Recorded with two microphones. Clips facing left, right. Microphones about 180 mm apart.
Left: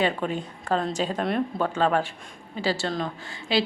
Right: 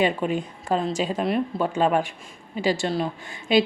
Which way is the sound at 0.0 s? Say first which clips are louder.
Right 3 dB; 10° right (ahead or behind).